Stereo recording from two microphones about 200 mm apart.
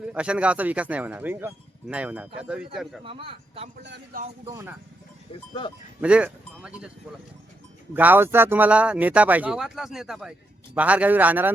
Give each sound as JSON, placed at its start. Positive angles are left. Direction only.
{"t": 0.0, "sound": "speech", "side_deg": -5}
{"t": 3.0, "sound": "a man's voice", "side_deg": -25}
{"t": 3.8, "sound": "a man's voice", "side_deg": -55}
{"t": 4.4, "sound": "speech", "side_deg": -15}
{"t": 6.0, "sound": "speech", "side_deg": -5}
{"t": 7.9, "sound": "speech", "side_deg": -10}